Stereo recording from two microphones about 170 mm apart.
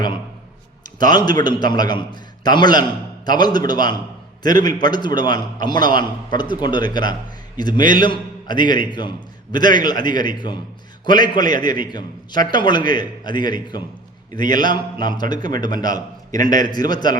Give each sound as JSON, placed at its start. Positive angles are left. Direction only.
{"t": 1.1, "sound": "a man's voice", "side_deg": 25}